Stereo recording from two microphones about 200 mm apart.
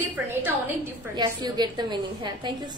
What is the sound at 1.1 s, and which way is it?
A woman's voice, 20° right (ahead or behind).